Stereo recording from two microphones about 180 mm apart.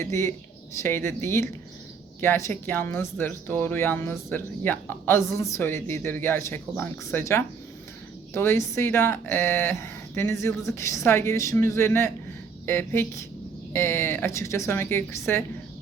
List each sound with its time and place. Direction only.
0.0 s speech: 15° left (ahead or behind)